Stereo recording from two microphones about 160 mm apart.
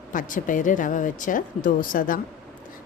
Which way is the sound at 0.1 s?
55° left (ahead or behind).